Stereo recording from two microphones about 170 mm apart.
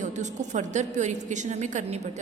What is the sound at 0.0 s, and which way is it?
A woman's voice, 45° right (ahead or behind).